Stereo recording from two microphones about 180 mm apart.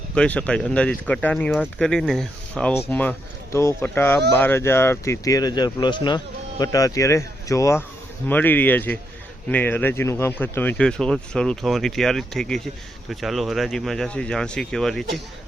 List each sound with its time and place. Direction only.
0.1 s speech: 5° left (ahead or behind)